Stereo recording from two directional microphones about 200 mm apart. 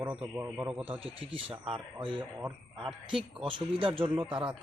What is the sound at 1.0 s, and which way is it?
Speech, 25° right (ahead or behind).